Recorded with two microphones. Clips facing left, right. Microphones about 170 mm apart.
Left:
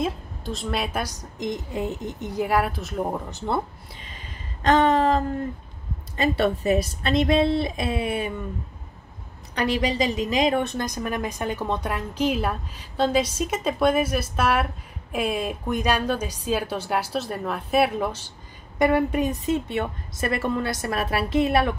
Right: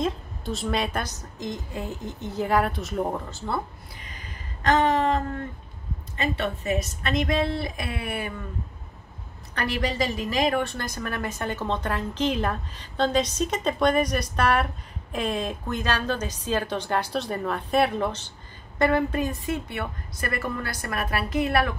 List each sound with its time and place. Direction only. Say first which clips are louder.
0.0 s a woman's voice: even; centre (ahead or behind)
3.3 s speech: left 3 dB; 20° left (ahead or behind)
4.6 s a sound: left 3 dB; 30° left (ahead or behind)
6.1 s a woman's voice: left 6 dB; 35° left (ahead or behind); by 8.4 s 20° left (ahead or behind)
9.6 s a woman's voice: left 3 dB; 15° left (ahead or behind)